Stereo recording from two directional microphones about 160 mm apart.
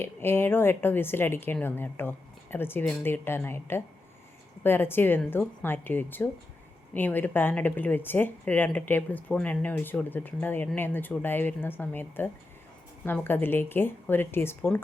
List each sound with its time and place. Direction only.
0.0 s speech: 15° left (ahead or behind)